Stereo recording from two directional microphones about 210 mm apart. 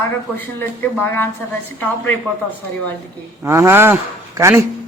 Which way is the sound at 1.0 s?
10° left (ahead or behind).